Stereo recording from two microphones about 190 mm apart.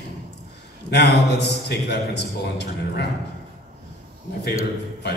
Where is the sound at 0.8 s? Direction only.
60° left (ahead or behind).